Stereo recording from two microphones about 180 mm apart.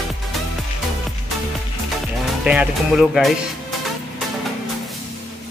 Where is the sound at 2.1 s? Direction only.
5° right (ahead or behind).